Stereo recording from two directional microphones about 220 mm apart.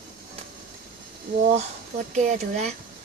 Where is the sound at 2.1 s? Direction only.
30° right (ahead or behind).